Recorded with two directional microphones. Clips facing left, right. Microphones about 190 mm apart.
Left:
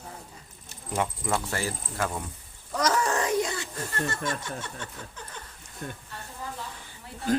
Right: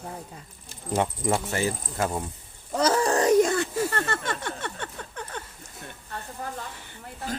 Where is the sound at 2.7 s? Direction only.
30° right (ahead or behind).